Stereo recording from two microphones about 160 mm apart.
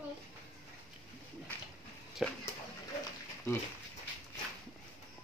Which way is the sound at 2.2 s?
Centre (ahead or behind).